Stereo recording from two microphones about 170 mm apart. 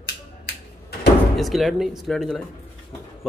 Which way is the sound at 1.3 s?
Centre (ahead or behind).